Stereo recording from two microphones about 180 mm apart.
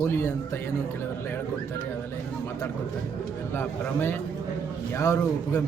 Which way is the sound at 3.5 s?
10° left (ahead or behind).